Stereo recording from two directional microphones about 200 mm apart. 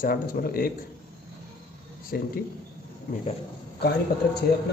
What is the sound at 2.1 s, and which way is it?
Speech, 50° left (ahead or behind).